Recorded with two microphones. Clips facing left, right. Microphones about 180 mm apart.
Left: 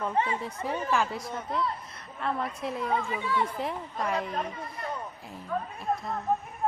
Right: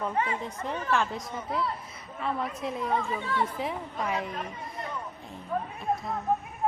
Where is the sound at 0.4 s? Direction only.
5° left (ahead or behind).